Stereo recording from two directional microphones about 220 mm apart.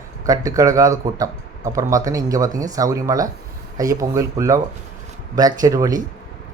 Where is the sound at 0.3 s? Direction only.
15° right (ahead or behind).